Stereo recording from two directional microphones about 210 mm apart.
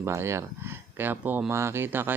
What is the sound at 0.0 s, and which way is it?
Speech, 15° right (ahead or behind).